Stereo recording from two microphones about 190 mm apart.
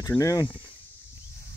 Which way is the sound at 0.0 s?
15° left (ahead or behind).